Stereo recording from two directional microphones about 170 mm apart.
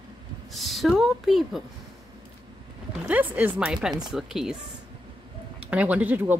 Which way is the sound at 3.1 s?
10° right (ahead or behind).